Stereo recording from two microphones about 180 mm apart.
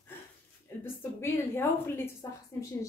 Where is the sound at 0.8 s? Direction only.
15° left (ahead or behind).